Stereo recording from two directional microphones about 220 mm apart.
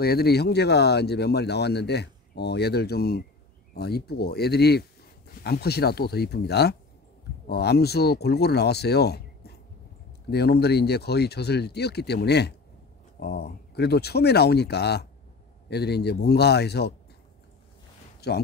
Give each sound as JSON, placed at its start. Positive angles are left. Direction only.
{"t": 0.0, "sound": "speech", "side_deg": 45}
{"t": 18.2, "sound": "speech", "side_deg": 45}